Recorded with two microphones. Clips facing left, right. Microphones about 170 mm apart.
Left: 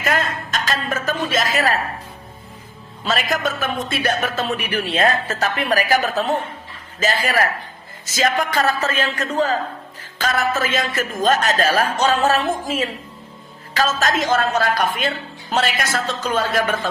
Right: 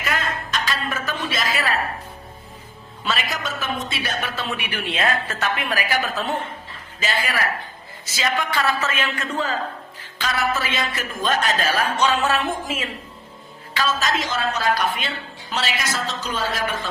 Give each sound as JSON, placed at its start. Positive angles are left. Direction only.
{"t": 0.0, "sound": "music", "side_deg": 45}
{"t": 3.0, "sound": "speech", "side_deg": 40}